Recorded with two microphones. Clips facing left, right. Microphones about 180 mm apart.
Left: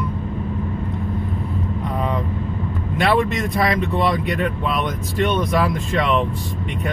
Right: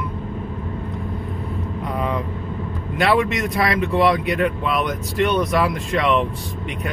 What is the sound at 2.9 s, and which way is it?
Speech, centre (ahead or behind).